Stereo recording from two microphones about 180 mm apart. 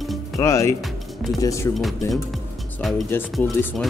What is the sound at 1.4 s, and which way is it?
Speech, 20° left (ahead or behind).